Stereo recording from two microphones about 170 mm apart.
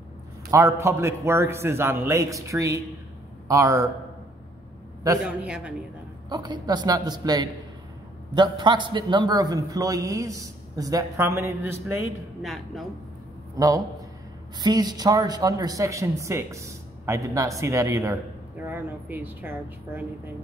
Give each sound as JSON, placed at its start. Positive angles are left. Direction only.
{"t": 0.5, "sound": "a man's voice", "side_deg": -20}
{"t": 5.2, "sound": "speech", "side_deg": -5}
{"t": 6.2, "sound": "a man's voice", "side_deg": -25}
{"t": 12.4, "sound": "speech", "side_deg": 0}
{"t": 13.6, "sound": "a man's voice", "side_deg": -20}